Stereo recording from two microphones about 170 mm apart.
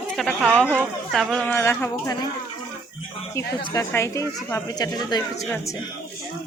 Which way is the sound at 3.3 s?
15° left (ahead or behind).